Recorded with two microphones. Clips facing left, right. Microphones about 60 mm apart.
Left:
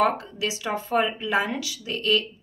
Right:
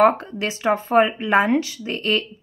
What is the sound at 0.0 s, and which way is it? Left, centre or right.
Speech, right.